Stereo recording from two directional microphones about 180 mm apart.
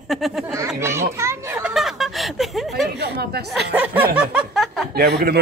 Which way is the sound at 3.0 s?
65° right (ahead or behind).